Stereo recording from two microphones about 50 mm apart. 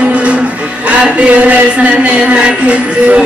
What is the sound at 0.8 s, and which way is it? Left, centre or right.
Speech, right.